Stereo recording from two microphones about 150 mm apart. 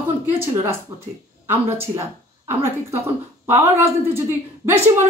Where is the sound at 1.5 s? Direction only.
15° right (ahead or behind).